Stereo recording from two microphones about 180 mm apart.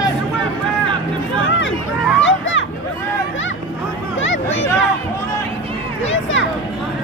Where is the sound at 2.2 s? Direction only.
90° left.